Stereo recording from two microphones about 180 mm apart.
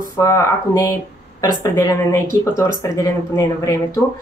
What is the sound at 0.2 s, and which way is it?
Speech, 15° left (ahead or behind).